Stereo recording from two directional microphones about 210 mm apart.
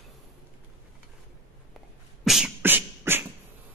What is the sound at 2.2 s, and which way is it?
Beatboxing, centre (ahead or behind).